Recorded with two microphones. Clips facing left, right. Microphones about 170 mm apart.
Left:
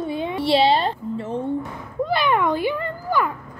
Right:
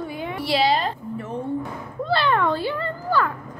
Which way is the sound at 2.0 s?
15° left (ahead or behind).